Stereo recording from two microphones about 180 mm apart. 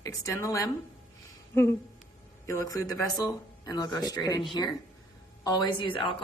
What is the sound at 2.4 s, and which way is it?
A woman's voice, 20° left (ahead or behind).